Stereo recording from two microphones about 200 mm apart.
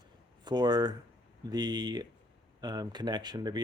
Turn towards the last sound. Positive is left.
turn(degrees=-20)  # may be behind; listen again after turning